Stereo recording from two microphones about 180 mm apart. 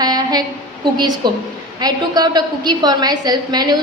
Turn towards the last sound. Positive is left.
turn(degrees=-25)  # may be behind; listen again after turning